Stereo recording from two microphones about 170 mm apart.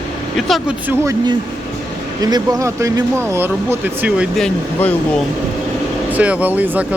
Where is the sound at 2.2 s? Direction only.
20° right (ahead or behind).